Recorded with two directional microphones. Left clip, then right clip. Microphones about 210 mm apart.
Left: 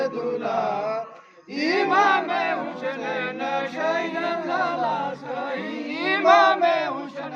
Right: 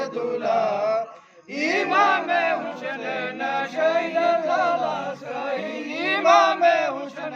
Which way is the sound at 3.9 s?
35° right (ahead or behind).